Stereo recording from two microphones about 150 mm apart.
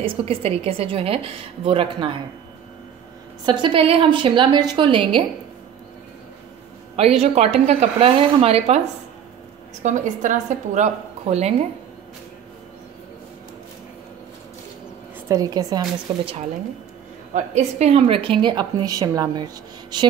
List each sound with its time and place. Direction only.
0.0 s a woman's voice: 40° right (ahead or behind)
3.4 s a woman's voice: 30° right (ahead or behind)
7.0 s a woman's voice: 45° right (ahead or behind)
9.8 s a woman's voice: 55° right (ahead or behind)
15.2 s speech: 20° right (ahead or behind)
17.3 s a woman's voice: 50° right (ahead or behind); by 20.1 s 30° right (ahead or behind)